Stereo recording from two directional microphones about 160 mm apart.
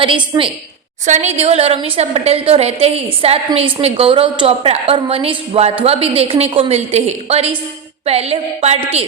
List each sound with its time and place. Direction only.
0.3 s a woman's voice: 20° right (ahead or behind)
1.0 s a woman's voice: 45° right (ahead or behind)